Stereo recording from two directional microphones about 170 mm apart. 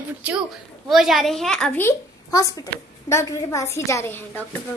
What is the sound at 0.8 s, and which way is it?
A woman's voice, centre (ahead or behind).